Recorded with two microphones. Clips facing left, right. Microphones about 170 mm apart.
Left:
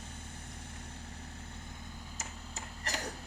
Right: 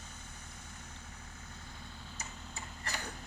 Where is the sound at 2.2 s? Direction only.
40° left (ahead or behind).